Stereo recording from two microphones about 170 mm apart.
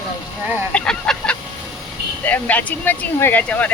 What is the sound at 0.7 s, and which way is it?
Goose, 5° left (ahead or behind).